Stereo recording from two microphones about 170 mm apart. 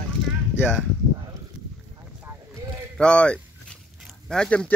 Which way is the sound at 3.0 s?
5° left (ahead or behind).